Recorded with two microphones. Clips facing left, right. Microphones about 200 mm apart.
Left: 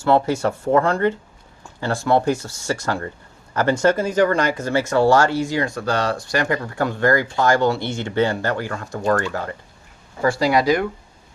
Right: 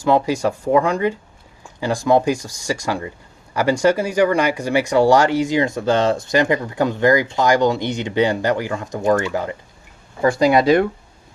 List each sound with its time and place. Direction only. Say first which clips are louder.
0.0 s speech: right 1 dB; 15° right (ahead or behind)